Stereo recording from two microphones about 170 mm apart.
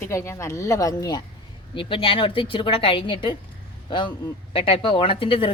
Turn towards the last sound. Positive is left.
turn(degrees=30)  # may be behind; listen again after turning